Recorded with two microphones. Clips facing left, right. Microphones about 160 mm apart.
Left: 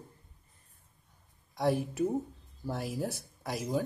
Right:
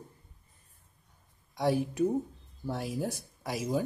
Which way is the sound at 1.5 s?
Centre (ahead or behind).